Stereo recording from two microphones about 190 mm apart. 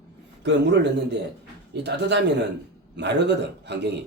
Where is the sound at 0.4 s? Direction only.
65° right (ahead or behind).